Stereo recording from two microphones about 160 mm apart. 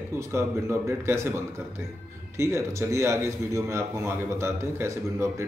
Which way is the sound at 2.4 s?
15° right (ahead or behind).